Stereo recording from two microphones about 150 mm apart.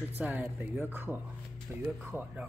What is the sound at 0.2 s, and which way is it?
Speech, 15° right (ahead or behind).